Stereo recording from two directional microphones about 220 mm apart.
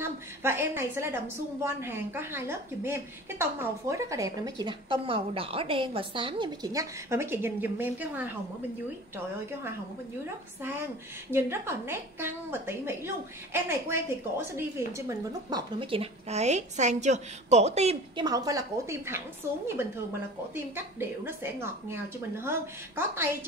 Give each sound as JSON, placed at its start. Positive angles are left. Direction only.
{"t": 0.0, "sound": "a woman's voice", "side_deg": -10}
{"t": 10.6, "sound": "a woman's voice", "side_deg": -10}
{"t": 18.2, "sound": "a woman's voice", "side_deg": -15}
{"t": 20.5, "sound": "a woman's voice", "side_deg": -10}